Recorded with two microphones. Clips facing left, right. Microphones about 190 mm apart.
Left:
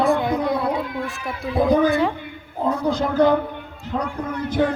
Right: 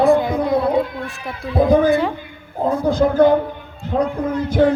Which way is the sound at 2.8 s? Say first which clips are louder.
Right 5 dB; 50° right (ahead or behind).